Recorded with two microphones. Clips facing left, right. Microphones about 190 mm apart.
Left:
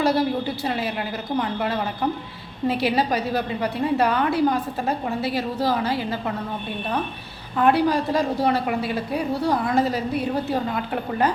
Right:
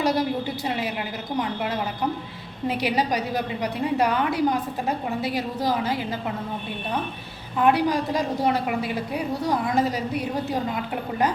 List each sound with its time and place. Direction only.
0.0 s a woman's voice: 15° right (ahead or behind)
7.6 s a woman's voice: 15° right (ahead or behind)